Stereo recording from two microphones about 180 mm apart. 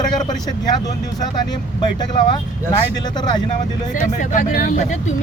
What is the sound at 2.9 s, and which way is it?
Speech, 25° left (ahead or behind).